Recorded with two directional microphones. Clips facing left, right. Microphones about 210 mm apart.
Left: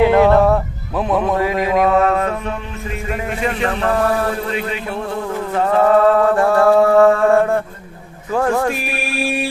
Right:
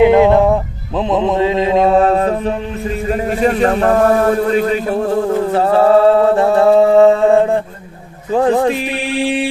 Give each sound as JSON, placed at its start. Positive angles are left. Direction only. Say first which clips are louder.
{"t": 0.0, "sound": "music", "louder": "right 3 dB", "side_deg": -20}